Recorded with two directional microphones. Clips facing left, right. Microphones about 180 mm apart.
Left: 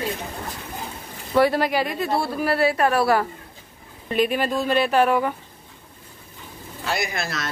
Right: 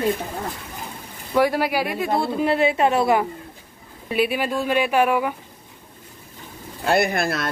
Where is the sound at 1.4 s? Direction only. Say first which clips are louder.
Left 1 dB; 10° right (ahead or behind).